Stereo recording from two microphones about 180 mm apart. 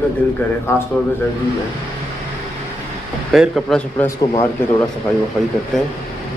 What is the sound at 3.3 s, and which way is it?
Speech, centre (ahead or behind).